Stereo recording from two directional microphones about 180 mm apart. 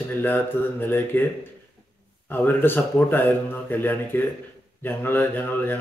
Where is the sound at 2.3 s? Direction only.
10° left (ahead or behind).